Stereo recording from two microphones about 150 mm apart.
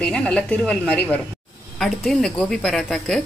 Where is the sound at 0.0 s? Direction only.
5° left (ahead or behind).